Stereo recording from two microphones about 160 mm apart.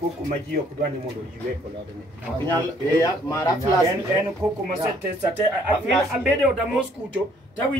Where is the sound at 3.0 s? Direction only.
20° left (ahead or behind).